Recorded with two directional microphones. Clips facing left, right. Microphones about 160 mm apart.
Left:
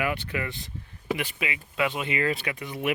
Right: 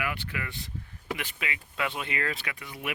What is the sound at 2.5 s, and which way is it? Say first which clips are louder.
Speech: left 8 dB; 25° left (ahead or behind).